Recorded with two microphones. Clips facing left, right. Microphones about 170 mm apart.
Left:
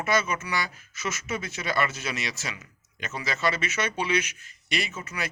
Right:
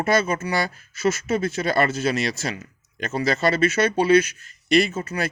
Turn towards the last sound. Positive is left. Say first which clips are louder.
# right 13 dB
turn(degrees=-40)  # may be behind; listen again after turning